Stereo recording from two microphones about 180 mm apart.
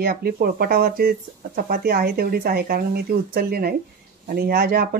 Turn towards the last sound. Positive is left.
turn(degrees=-55)  # may be behind; listen again after turning